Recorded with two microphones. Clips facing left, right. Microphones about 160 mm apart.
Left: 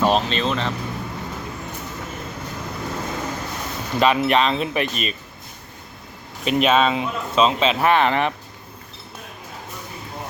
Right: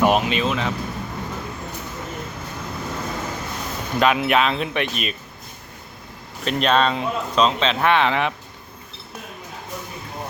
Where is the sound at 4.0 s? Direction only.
Centre (ahead or behind).